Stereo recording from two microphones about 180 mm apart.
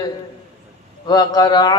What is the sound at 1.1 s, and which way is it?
Mantra, 20° left (ahead or behind).